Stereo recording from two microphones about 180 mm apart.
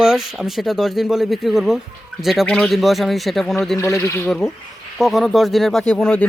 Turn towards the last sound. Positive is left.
turn(degrees=5)  # may be behind; listen again after turning